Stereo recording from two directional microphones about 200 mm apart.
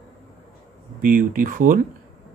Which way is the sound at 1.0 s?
45° right (ahead or behind).